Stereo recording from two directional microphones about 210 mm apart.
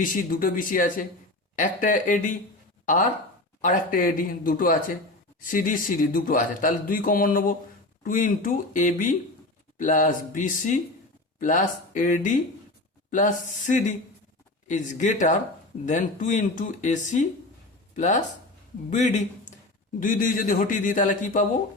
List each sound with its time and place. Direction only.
0.0 s a man's voice: 40° left (ahead or behind)